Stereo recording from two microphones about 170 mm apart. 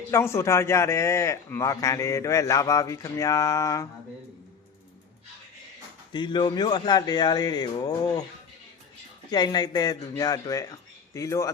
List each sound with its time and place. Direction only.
0.1 s a man's voice: 15° left (ahead or behind)
6.1 s speech: 25° left (ahead or behind)
9.3 s speech: 25° left (ahead or behind)